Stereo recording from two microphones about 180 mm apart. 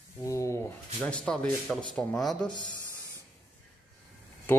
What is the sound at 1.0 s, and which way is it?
Speech, 5° left (ahead or behind).